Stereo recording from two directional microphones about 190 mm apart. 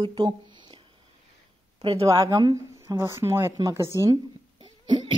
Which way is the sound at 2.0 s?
20° right (ahead or behind).